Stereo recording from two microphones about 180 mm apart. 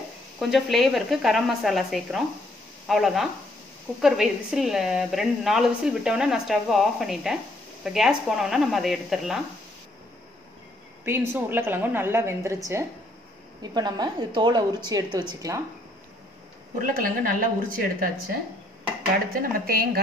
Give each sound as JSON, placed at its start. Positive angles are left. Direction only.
{"t": 0.4, "sound": "a woman's voice", "side_deg": 0}
{"t": 11.1, "sound": "a woman's voice", "side_deg": -10}
{"t": 13.6, "sound": "a woman's voice", "side_deg": -20}
{"t": 16.7, "sound": "speech", "side_deg": -50}
{"t": 19.3, "sound": "speech", "side_deg": -55}